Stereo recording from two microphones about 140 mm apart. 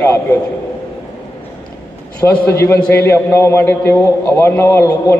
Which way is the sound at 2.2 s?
15° left (ahead or behind).